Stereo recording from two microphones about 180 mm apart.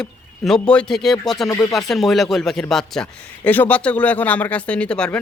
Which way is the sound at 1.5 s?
20° left (ahead or behind).